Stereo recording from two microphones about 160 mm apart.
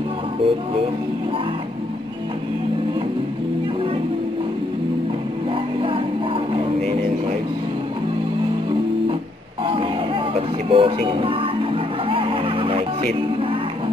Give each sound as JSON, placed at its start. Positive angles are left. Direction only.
{"t": 10.7, "sound": "music", "side_deg": -35}